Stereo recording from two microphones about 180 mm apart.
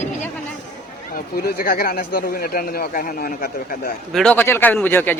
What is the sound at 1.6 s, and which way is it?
Speech, 55° left (ahead or behind).